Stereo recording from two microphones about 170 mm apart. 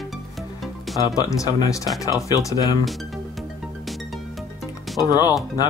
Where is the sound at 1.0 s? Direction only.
20° left (ahead or behind).